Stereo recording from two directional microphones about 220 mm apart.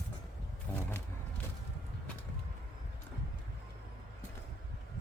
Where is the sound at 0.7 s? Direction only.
5° left (ahead or behind).